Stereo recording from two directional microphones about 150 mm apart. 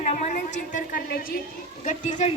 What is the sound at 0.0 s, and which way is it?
A woman's voice, 55° left (ahead or behind).